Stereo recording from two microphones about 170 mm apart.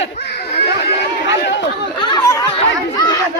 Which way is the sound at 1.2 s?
90° left.